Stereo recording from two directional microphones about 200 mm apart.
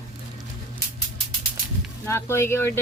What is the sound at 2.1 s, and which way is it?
Speech, 15° left (ahead or behind).